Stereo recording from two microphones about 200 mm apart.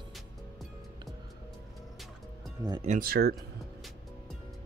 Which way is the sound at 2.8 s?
45° right (ahead or behind).